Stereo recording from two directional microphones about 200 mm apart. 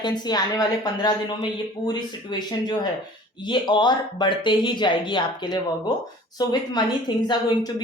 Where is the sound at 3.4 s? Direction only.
25° left (ahead or behind).